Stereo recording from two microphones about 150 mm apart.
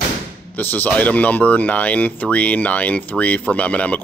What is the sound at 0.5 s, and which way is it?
Speech, 10° left (ahead or behind).